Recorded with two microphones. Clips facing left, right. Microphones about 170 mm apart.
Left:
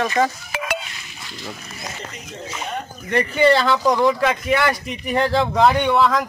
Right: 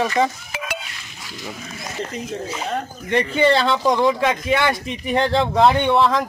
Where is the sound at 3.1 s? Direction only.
25° right (ahead or behind).